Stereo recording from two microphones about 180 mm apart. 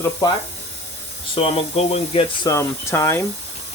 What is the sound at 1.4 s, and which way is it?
Speech, 35° left (ahead or behind).